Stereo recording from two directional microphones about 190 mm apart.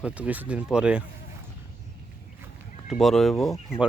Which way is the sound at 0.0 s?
5° right (ahead or behind).